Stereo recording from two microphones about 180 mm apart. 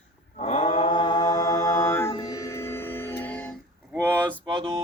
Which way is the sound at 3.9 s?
10° right (ahead or behind).